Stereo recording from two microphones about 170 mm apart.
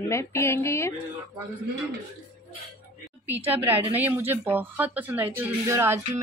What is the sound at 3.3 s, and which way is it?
A woman's voice, 10° right (ahead or behind).